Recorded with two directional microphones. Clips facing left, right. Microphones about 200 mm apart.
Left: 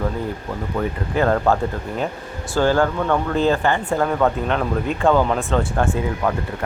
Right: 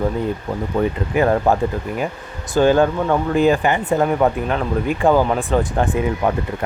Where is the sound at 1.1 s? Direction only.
15° right (ahead or behind).